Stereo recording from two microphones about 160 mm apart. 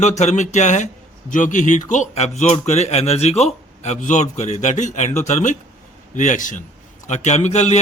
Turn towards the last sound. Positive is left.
turn(degrees=45)  # may be behind; listen again after turning